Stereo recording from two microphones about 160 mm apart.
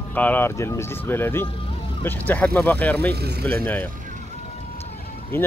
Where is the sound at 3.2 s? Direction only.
85° right.